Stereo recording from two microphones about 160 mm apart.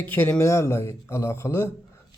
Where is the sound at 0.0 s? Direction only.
10° left (ahead or behind).